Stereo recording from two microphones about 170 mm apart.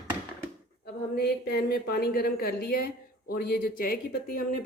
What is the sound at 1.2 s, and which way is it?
Speech, 70° left (ahead or behind).